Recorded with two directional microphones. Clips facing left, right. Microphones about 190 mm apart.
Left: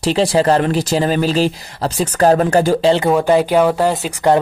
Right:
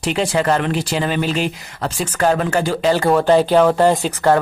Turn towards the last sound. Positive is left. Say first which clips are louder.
# right 1 dB
turn(degrees=5)  # may be behind; listen again after turning